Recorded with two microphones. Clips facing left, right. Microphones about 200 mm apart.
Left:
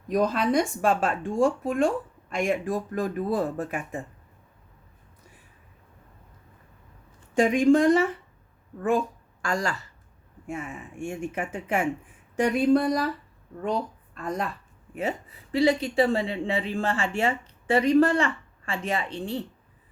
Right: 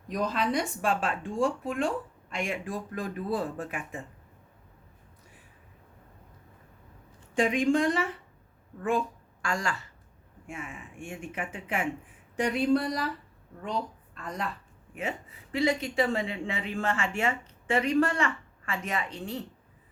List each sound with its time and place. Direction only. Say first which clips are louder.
0.1 s speech: left 6 dB; 45° left (ahead or behind)
7.3 s a woman's voice: left 5 dB; 45° left (ahead or behind)
14.9 s speech: left 5 dB; 35° left (ahead or behind)